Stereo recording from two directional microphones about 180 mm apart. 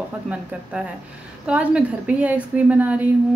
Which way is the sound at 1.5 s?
5° right (ahead or behind).